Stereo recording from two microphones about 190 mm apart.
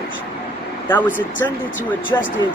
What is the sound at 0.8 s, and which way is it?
Speech, 10° left (ahead or behind).